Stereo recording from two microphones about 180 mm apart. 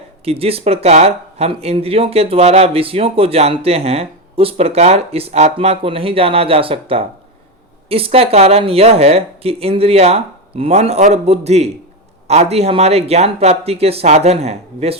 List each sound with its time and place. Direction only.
0.3 s speech: 35° right (ahead or behind)